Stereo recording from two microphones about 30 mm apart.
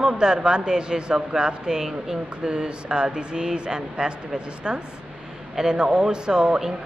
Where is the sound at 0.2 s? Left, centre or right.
Right.